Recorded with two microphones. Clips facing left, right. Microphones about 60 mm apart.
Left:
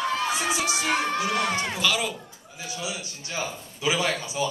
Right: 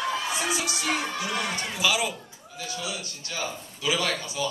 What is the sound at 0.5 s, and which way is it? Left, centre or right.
Music, centre.